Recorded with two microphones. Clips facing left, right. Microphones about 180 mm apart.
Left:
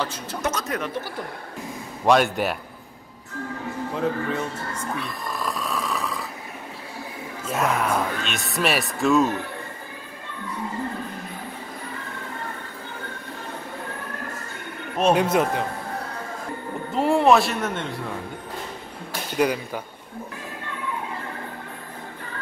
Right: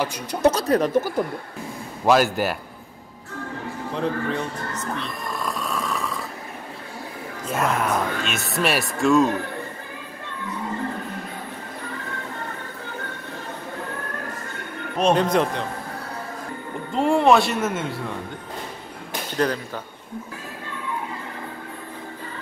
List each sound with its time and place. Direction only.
0.0 s speech: 15° right (ahead or behind)
0.4 s speech: 35° right (ahead or behind)
2.0 s speech: centre (ahead or behind)
3.9 s snoring: 5° left (ahead or behind)
7.4 s speech: centre (ahead or behind)
15.0 s speech: 5° left (ahead or behind)
16.9 s speech: centre (ahead or behind)
19.3 s speech: 10° left (ahead or behind)